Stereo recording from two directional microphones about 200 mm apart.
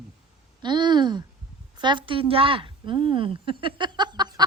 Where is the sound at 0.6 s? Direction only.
20° right (ahead or behind).